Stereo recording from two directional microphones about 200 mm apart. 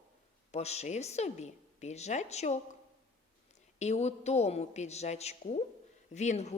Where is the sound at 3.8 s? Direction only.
35° left (ahead or behind).